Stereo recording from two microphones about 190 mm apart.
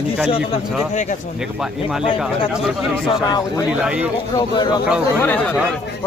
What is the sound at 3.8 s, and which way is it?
Speech, 5° right (ahead or behind).